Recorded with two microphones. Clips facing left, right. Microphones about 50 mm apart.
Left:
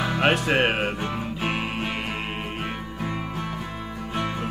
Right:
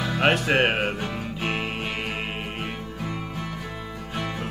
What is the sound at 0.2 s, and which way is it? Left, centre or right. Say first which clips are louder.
Music: right 1 dB; centre.